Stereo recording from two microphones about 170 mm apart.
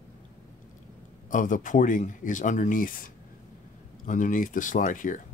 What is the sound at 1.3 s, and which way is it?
Speech, 50° left (ahead or behind).